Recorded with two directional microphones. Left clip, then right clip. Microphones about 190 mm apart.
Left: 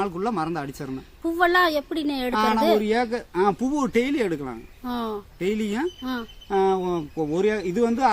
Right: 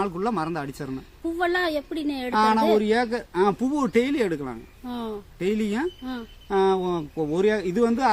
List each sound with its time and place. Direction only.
0.0 s speech: 10° right (ahead or behind)
1.2 s a woman's voice: 30° left (ahead or behind)
2.3 s speech: 15° right (ahead or behind)
4.9 s speech: 30° left (ahead or behind)
5.4 s speech: 10° right (ahead or behind)